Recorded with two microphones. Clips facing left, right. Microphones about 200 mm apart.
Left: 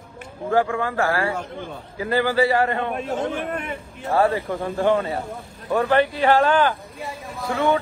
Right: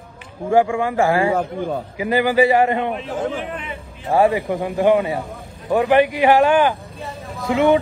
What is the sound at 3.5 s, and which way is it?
Speech, 50° left (ahead or behind).